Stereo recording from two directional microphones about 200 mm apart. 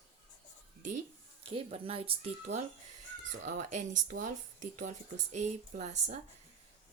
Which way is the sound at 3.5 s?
35° right (ahead or behind).